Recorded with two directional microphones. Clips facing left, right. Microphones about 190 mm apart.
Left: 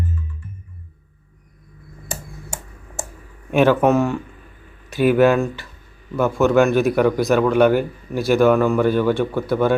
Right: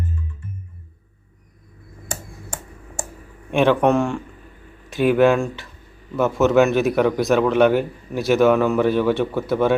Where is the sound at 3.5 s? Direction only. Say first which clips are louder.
Left 1 dB; 5° left (ahead or behind).